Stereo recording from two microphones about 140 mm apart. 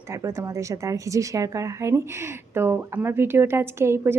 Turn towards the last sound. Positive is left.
turn(degrees=-15)  # may be behind; listen again after turning